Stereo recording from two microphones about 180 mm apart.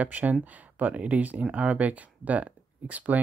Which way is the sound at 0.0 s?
10° right (ahead or behind).